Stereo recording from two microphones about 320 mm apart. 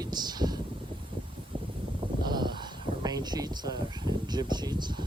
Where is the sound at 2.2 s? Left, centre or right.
Centre.